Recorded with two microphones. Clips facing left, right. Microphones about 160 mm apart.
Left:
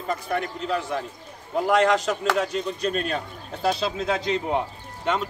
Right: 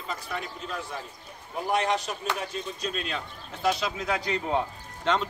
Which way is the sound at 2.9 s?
50° left (ahead or behind).